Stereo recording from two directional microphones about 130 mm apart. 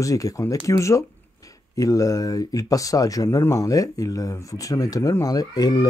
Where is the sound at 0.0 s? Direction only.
25° left (ahead or behind).